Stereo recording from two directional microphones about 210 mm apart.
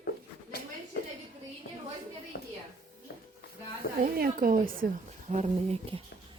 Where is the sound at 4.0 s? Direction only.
45° right (ahead or behind).